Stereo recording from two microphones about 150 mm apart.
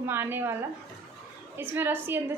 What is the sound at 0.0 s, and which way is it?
Speech, 15° right (ahead or behind).